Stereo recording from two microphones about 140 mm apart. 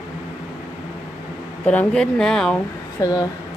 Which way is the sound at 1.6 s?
10° left (ahead or behind).